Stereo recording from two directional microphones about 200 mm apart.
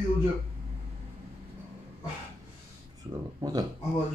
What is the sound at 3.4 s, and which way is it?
Speech, 20° right (ahead or behind).